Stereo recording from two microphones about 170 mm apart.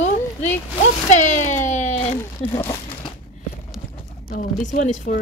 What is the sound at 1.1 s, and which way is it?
Speech, 45° left (ahead or behind).